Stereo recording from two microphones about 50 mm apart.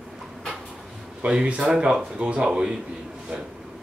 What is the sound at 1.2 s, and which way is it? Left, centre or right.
A man's voice, centre.